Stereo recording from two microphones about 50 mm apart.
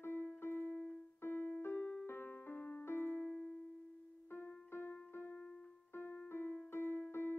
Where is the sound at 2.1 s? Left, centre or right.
Left.